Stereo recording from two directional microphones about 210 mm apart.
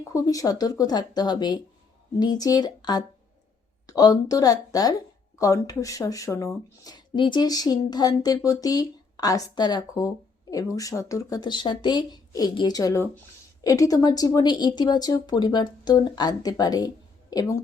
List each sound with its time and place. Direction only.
0.1 s speech: 15° left (ahead or behind)